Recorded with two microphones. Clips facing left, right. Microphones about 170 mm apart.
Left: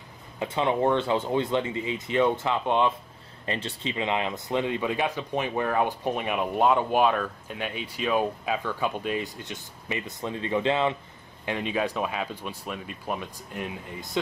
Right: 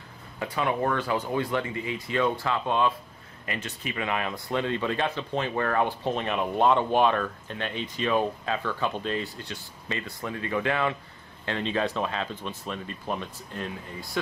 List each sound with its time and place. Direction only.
0.4 s speech: 25° left (ahead or behind)
3.4 s speech: 30° left (ahead or behind)